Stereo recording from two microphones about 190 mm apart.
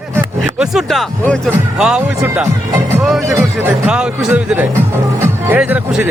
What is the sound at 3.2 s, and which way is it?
Speech, 15° right (ahead or behind).